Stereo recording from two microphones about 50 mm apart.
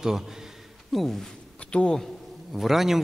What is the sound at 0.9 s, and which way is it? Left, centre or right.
Speech, centre.